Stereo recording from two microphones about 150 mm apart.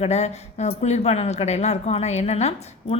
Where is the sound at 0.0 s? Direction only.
45° left (ahead or behind).